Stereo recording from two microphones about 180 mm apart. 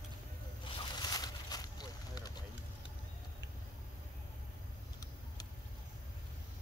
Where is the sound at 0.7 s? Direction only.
25° left (ahead or behind).